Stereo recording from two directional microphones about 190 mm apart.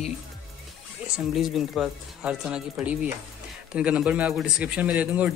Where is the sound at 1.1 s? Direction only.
Centre (ahead or behind).